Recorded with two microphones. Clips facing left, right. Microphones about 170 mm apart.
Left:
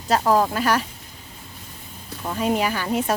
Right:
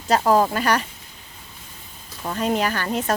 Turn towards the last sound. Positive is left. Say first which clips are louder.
# left 1 dB
turn(degrees=10)  # may be behind; listen again after turning